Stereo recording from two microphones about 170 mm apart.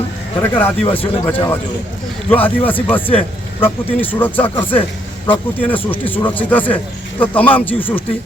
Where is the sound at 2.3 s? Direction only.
10° left (ahead or behind).